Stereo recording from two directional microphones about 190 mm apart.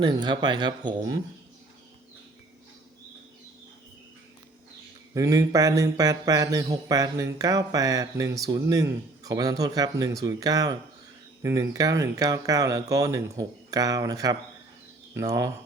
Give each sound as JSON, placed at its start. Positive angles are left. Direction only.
{"t": 0.0, "sound": "speech", "side_deg": -20}
{"t": 5.1, "sound": "speech", "side_deg": -15}